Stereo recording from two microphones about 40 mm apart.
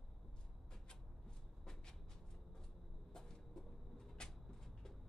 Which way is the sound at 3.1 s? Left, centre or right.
Centre.